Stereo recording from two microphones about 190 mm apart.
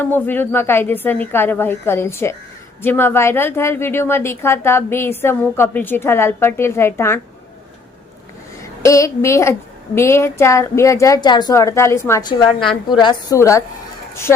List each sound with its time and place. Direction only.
0.0 s a woman's voice: 10° left (ahead or behind)
8.8 s a woman's voice: 15° left (ahead or behind)